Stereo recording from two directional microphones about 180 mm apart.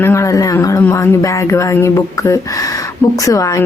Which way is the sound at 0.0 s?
15° left (ahead or behind).